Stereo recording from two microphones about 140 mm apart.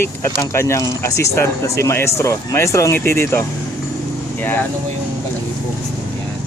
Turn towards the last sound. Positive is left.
turn(degrees=15)  # may be behind; listen again after turning